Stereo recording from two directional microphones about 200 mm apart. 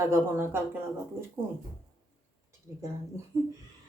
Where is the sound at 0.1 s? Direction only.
10° right (ahead or behind).